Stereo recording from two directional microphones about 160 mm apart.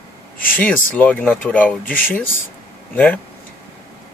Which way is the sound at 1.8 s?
60° left (ahead or behind).